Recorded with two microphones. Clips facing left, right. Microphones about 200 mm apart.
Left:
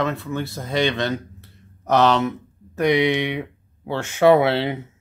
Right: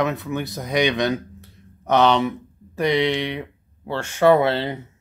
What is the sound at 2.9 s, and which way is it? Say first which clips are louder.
Speech: left 2 dB; 15° left (ahead or behind).